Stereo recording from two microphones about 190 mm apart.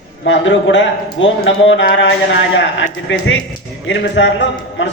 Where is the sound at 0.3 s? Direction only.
75° left (ahead or behind).